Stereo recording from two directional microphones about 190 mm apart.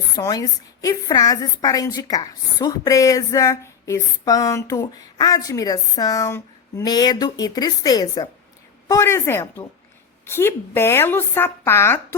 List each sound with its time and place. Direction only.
0.2 s a woman's voice: 20° left (ahead or behind)